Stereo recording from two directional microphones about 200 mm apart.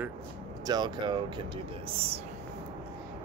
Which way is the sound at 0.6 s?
20° right (ahead or behind).